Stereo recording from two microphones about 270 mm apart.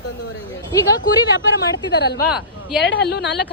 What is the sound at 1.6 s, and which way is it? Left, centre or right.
Speech, left.